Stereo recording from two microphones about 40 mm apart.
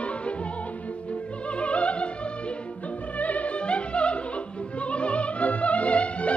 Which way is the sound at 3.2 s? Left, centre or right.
Left.